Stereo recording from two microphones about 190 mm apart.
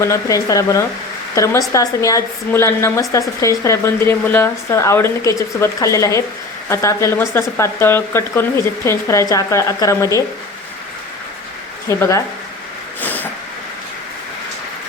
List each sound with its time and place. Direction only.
0.0 s a woman's voice: 15° left (ahead or behind)
11.9 s a woman's voice: 15° left (ahead or behind)
13.0 s a sound: 10° left (ahead or behind)